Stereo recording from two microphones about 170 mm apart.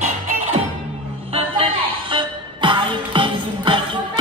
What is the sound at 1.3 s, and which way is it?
Music, 30° right (ahead or behind).